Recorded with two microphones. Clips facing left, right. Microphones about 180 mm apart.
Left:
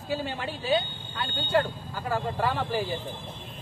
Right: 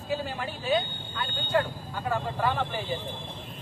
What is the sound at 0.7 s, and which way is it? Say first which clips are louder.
Speech: left 1 dB; 30° left (ahead or behind).